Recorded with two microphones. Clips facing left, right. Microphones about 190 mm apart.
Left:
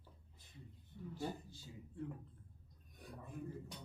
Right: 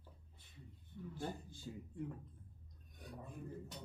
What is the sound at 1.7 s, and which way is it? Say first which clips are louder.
Speech: right 8 dB; 60° right (ahead or behind).